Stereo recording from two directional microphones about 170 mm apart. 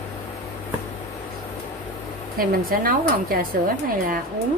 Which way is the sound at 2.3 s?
60° right (ahead or behind).